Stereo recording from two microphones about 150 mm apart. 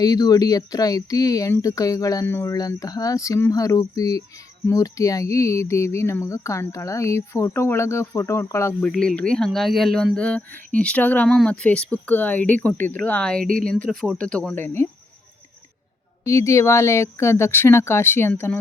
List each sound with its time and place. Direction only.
0.0 s speech: 25° left (ahead or behind)
8.8 s speech: 5° left (ahead or behind)
13.4 s speech: 65° right (ahead or behind)
13.7 s speech: 5° left (ahead or behind)
16.2 s speech: 20° left (ahead or behind)